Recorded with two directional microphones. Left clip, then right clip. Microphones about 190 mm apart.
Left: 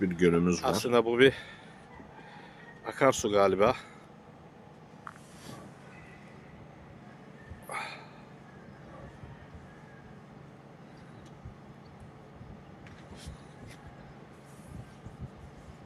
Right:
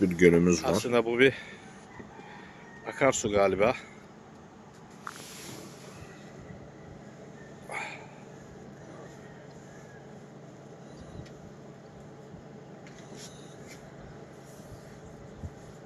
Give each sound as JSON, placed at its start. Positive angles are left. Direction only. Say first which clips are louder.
{"t": 0.2, "sound": "speech", "louder": "right 5 dB", "side_deg": -10}
{"t": 0.6, "sound": "speech", "louder": "even", "side_deg": 15}
{"t": 2.8, "sound": "speech", "louder": "even", "side_deg": 15}
{"t": 7.7, "sound": "a sound", "louder": "right 1 dB", "side_deg": 5}